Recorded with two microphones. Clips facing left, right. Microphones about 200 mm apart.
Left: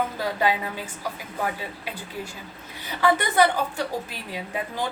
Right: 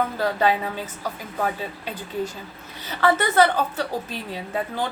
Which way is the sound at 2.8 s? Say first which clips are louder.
Right 2 dB; 15° left (ahead or behind).